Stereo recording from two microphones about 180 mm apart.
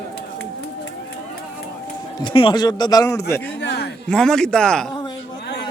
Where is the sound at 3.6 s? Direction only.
70° left (ahead or behind).